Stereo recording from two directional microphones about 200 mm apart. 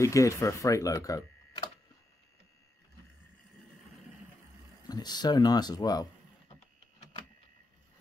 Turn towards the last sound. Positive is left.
turn(degrees=20)  # may be behind; listen again after turning